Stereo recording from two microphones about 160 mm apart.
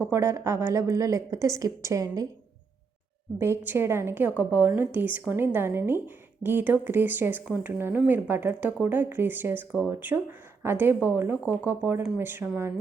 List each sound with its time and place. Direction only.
0.0 s a woman's voice: 15° right (ahead or behind)
3.3 s a woman's voice: 15° right (ahead or behind)